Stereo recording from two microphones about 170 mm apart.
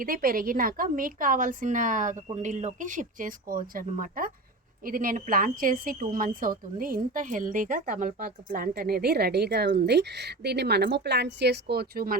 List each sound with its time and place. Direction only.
0.0 s a woman's voice: 55° right (ahead or behind)